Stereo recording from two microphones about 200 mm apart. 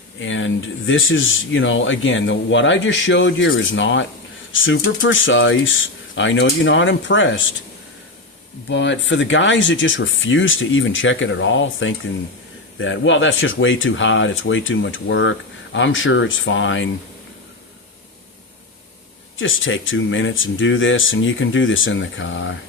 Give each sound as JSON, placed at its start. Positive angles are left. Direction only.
{"t": 0.2, "sound": "speech", "side_deg": 70}
{"t": 8.7, "sound": "speech", "side_deg": 60}
{"t": 19.4, "sound": "speech", "side_deg": 75}